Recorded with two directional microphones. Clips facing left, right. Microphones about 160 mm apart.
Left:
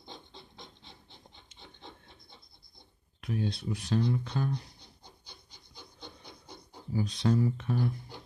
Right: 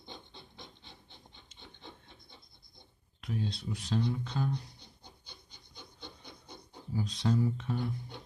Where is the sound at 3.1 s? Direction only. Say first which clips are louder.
Left 3 dB; 60° left (ahead or behind).